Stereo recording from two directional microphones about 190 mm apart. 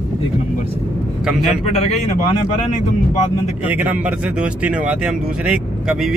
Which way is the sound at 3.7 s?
10° right (ahead or behind).